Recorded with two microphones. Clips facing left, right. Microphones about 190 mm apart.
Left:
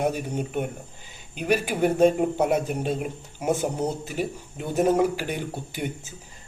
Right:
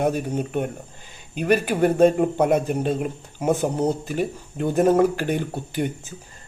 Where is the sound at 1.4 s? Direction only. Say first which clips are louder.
Right 4 dB; 10° left (ahead or behind).